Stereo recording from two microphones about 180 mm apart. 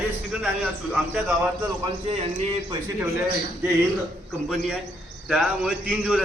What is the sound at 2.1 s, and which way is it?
Speech, 35° right (ahead or behind).